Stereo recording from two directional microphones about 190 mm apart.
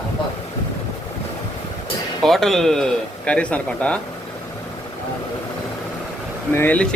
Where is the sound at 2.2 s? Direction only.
Centre (ahead or behind).